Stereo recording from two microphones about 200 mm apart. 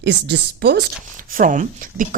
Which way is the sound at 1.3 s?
40° right (ahead or behind).